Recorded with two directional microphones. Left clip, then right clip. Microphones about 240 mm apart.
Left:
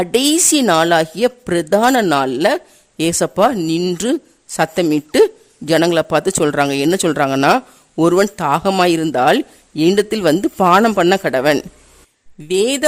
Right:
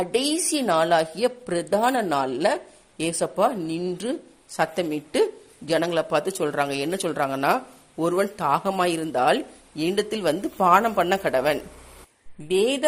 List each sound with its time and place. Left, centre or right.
0.0 s speech: left